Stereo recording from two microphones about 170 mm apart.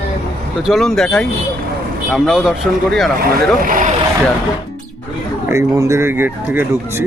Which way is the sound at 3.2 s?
55° right (ahead or behind).